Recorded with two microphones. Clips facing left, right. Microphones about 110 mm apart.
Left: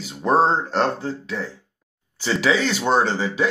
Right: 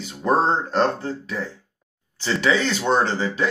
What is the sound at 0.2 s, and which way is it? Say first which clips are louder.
Speech: left 2 dB; centre (ahead or behind).